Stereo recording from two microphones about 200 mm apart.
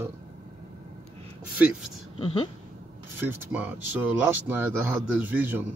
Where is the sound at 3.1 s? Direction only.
10° right (ahead or behind).